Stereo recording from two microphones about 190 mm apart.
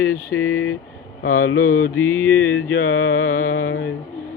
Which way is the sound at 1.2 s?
90° left.